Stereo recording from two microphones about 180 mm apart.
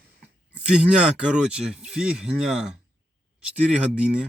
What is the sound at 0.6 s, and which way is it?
Speech, 5° right (ahead or behind).